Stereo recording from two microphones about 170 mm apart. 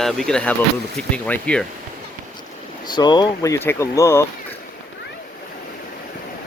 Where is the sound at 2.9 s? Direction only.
25° left (ahead or behind).